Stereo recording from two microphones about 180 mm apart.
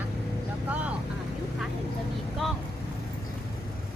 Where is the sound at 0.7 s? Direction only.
10° right (ahead or behind).